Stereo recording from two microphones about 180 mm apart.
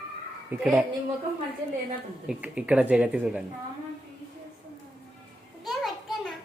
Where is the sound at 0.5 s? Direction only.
10° right (ahead or behind).